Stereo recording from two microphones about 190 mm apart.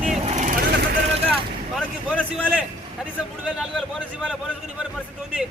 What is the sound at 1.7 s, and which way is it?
A man's voice, centre (ahead or behind).